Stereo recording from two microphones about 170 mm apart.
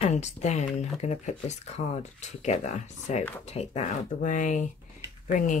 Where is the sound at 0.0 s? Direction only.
45° left (ahead or behind).